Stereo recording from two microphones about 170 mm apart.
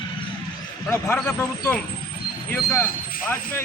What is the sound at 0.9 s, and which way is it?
Speech, 10° left (ahead or behind).